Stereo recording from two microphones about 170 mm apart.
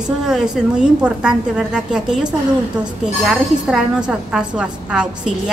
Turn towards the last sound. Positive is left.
turn(degrees=-5)  # may be behind; listen again after turning